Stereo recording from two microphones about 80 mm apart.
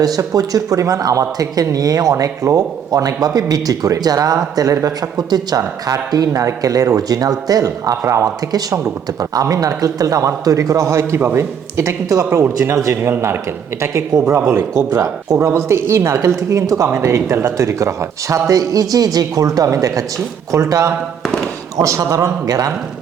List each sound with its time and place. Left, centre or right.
0.0 s speech: right
14.5 s speech: right